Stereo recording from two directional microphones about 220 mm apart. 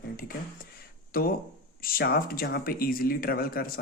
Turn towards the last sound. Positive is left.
turn(degrees=40)  # may be behind; listen again after turning